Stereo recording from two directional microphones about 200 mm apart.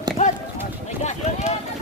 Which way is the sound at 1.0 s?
35° left (ahead or behind).